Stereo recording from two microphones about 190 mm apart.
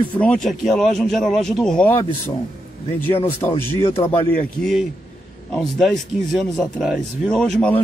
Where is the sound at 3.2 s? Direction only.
10° left (ahead or behind).